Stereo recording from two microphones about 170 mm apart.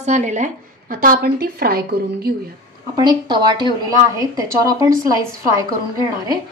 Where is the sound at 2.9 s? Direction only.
25° right (ahead or behind).